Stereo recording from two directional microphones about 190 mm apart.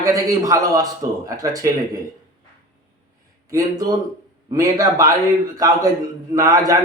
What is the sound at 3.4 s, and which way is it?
A man's voice, 20° right (ahead or behind).